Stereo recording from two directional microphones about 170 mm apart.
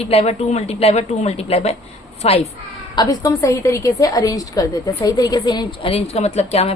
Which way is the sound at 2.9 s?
25° left (ahead or behind).